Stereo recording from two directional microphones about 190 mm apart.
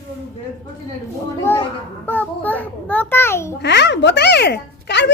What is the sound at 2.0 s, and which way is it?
A child's voice, 10° left (ahead or behind).